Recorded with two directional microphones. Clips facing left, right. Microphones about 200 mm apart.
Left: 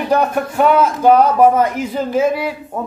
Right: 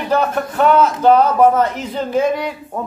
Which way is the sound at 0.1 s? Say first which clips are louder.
Left 1 dB; 10° left (ahead or behind).